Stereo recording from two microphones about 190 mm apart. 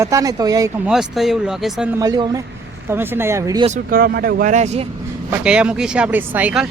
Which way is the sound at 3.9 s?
50° right (ahead or behind).